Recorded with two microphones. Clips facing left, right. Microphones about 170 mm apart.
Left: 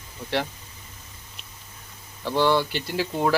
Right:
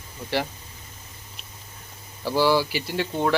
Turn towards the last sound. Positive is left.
turn(degrees=5)  # may be behind; listen again after turning